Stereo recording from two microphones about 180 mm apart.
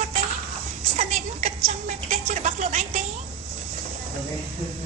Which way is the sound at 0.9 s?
40° right (ahead or behind).